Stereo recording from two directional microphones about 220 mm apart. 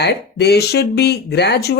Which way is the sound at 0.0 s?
50° left (ahead or behind).